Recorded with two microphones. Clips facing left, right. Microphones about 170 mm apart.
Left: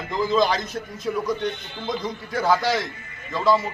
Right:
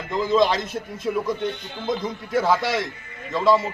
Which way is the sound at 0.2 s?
25° right (ahead or behind).